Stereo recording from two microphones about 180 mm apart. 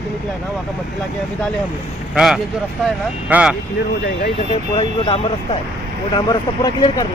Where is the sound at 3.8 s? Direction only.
65° left (ahead or behind).